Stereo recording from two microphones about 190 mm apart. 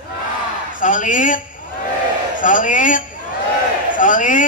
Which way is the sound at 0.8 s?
40° left (ahead or behind).